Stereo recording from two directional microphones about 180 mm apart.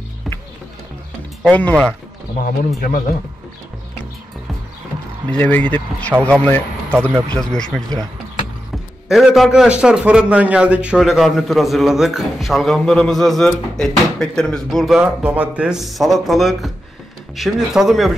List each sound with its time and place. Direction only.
1.4 s speech: 10° left (ahead or behind)
2.4 s a man's voice: 55° left (ahead or behind)
5.3 s a man's voice: 10° left (ahead or behind)
9.1 s a man's voice: centre (ahead or behind)